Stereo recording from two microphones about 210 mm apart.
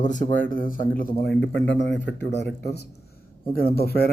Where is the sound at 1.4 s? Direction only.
60° left (ahead or behind).